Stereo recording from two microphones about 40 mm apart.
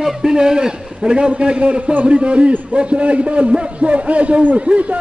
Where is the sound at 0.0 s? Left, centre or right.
Centre.